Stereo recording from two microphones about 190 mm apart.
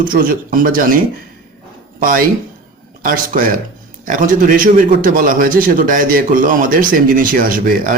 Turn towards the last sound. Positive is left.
turn(degrees=-45)  # may be behind; listen again after turning